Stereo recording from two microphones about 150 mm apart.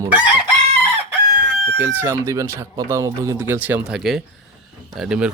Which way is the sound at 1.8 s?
15° right (ahead or behind).